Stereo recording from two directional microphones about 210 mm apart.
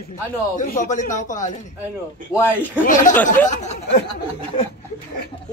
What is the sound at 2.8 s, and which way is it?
Speech, 40° left (ahead or behind).